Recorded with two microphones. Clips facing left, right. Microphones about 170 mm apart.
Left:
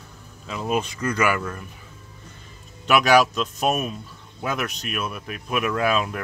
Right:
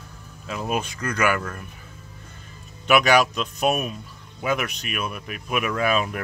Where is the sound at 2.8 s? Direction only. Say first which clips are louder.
Left 1 dB; centre (ahead or behind).